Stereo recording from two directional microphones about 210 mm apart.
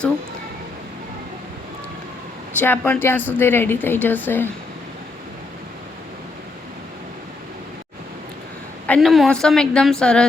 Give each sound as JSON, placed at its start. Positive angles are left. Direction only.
{"t": 2.6, "sound": "a woman's voice", "side_deg": 10}
{"t": 8.9, "sound": "a woman's voice", "side_deg": 0}